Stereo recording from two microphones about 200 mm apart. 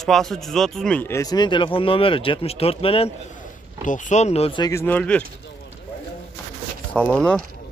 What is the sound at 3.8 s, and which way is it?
Speech, 40° left (ahead or behind).